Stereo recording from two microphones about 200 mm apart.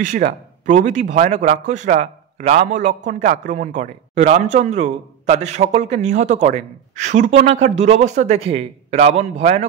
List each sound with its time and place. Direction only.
0.0 s a man's voice: 40° right (ahead or behind)